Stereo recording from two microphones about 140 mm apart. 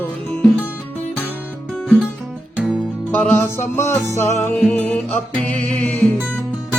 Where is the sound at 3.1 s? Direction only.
15° left (ahead or behind).